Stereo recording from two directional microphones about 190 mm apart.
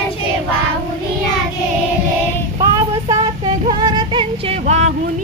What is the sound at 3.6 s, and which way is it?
Music, 25° right (ahead or behind).